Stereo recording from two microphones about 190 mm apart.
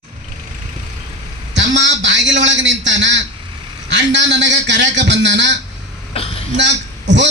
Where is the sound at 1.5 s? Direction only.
75° right (ahead or behind).